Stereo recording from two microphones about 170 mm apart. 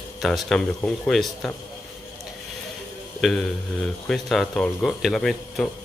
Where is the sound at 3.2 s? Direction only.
Centre (ahead or behind).